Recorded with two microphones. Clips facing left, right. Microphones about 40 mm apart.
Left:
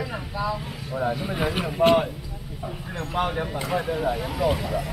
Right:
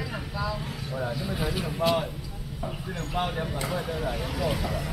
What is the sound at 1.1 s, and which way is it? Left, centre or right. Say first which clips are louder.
Speech: left 7 dB; left.